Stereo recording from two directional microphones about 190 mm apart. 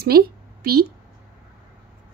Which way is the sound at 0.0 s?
55° right (ahead or behind).